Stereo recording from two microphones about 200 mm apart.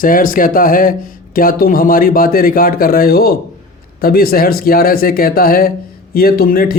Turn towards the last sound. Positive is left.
turn(degrees=45)  # may be behind; listen again after turning